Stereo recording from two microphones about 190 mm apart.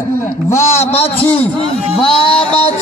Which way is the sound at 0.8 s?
30° left (ahead or behind).